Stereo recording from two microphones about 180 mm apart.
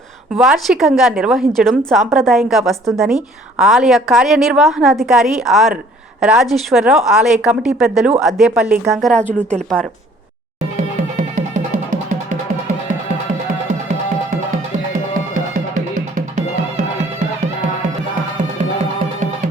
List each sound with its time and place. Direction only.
0.3 s a woman's voice: centre (ahead or behind)
11.2 s music: 45° right (ahead or behind)
15.5 s music: 45° right (ahead or behind)